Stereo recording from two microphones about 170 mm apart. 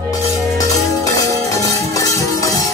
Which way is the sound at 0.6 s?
20° left (ahead or behind).